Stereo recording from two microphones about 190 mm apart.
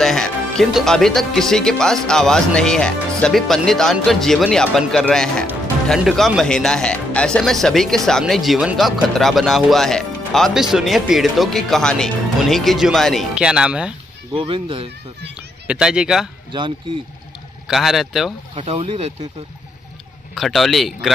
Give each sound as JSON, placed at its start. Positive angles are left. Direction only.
{"t": 0.0, "sound": "speech", "side_deg": 0}
{"t": 14.3, "sound": "speech", "side_deg": -30}
{"t": 15.6, "sound": "speech", "side_deg": -5}
{"t": 17.6, "sound": "speech", "side_deg": 0}
{"t": 18.5, "sound": "speech", "side_deg": -30}
{"t": 20.3, "sound": "speech", "side_deg": 0}